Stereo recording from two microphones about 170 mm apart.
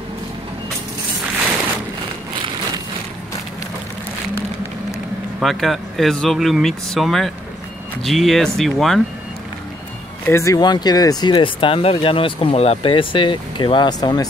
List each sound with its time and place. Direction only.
5.4 s speech: centre (ahead or behind)
10.2 s speech: 15° left (ahead or behind)